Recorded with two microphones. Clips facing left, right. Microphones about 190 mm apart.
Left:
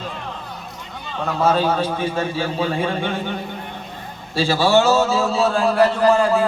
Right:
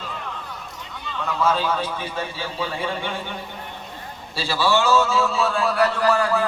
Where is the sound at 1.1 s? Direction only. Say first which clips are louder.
Left 4 dB; 45° left (ahead or behind).